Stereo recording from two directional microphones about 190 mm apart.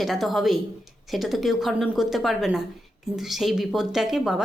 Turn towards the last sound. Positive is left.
turn(degrees=0)  # may be behind; listen again after turning